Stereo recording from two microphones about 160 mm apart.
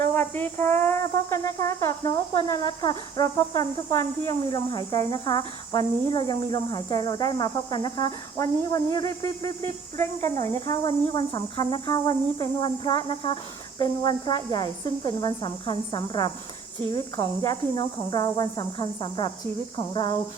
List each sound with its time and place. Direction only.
0.1 s music: 15° left (ahead or behind)
10.3 s speech: 45° right (ahead or behind)
10.7 s music: 30° left (ahead or behind)
19.9 s speech: 30° left (ahead or behind)